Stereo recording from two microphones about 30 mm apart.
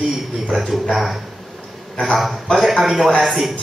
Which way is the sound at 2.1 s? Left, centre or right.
Centre.